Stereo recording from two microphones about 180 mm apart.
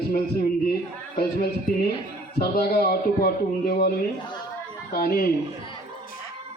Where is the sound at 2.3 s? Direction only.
60° left (ahead or behind).